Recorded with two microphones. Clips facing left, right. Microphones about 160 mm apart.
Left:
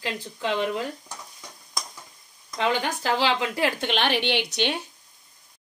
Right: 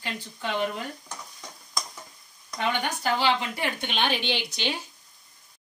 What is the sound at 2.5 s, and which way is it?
A woman's voice, 90° left.